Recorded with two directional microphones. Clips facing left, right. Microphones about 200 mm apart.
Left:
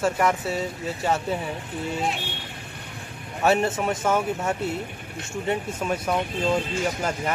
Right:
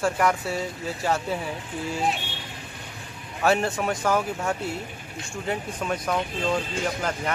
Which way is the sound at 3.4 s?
Centre (ahead or behind).